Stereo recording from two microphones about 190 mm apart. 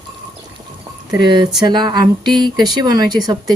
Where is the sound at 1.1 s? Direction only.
25° right (ahead or behind).